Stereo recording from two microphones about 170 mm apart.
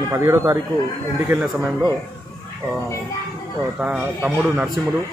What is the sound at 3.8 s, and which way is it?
Speech, 10° right (ahead or behind).